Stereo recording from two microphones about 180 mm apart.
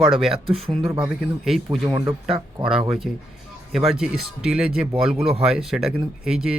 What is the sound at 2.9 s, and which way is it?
Speech, 5° right (ahead or behind).